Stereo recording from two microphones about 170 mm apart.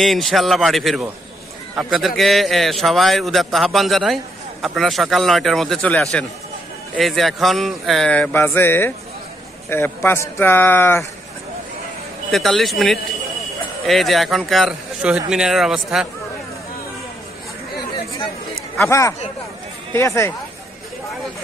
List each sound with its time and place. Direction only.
0.0 s a man's voice: centre (ahead or behind)
12.3 s a man's voice: centre (ahead or behind)
17.7 s chatter: 20° left (ahead or behind)
18.9 s a man's voice: 20° left (ahead or behind)